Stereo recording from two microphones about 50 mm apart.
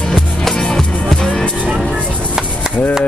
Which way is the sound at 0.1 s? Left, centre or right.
Centre.